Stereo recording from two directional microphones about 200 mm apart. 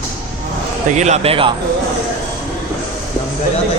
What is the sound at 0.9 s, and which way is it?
Speech, 35° right (ahead or behind).